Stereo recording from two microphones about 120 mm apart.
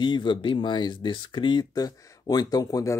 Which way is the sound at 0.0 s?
40° left (ahead or behind).